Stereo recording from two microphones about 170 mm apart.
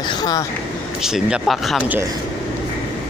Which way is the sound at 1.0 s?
5° right (ahead or behind).